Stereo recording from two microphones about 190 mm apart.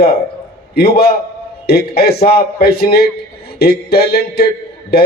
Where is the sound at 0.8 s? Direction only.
55° left (ahead or behind).